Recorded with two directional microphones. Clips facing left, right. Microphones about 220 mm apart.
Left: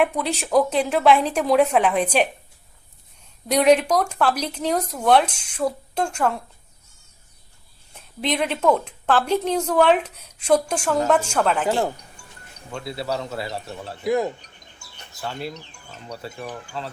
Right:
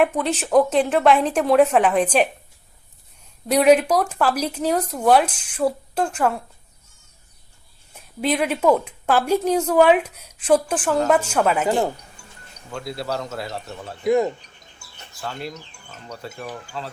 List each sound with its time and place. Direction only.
0.0 s speech: centre (ahead or behind)
3.5 s a woman's voice: 5° right (ahead or behind)
7.9 s a woman's voice: 5° right (ahead or behind)